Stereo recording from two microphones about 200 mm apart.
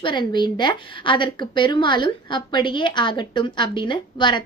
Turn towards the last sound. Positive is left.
turn(degrees=25)  # may be behind; listen again after turning